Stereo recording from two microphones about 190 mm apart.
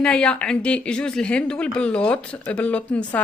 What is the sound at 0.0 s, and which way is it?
Speech, 5° left (ahead or behind).